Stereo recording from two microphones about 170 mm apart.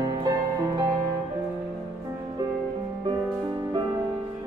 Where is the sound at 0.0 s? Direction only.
25° right (ahead or behind).